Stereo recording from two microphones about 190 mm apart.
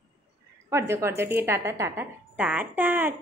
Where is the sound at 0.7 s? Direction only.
15° right (ahead or behind).